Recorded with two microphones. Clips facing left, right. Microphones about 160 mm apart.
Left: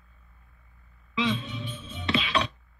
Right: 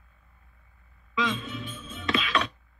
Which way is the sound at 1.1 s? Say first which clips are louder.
Left 1 dB; 30° left (ahead or behind).